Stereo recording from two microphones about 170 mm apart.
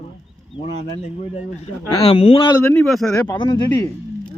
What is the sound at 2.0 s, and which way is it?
Speech, 35° left (ahead or behind).